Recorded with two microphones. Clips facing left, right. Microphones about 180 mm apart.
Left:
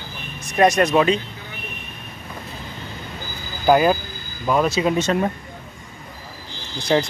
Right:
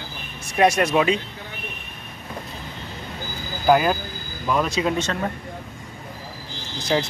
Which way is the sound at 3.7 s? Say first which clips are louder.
Left 2 dB; centre (ahead or behind).